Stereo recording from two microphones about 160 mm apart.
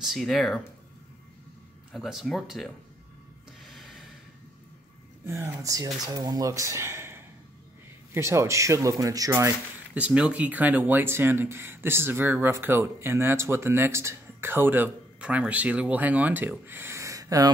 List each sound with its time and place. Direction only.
0.0 s speech: centre (ahead or behind)
1.9 s speech: centre (ahead or behind)
5.2 s speech: 15° right (ahead or behind)
9.9 s speech: 5° right (ahead or behind)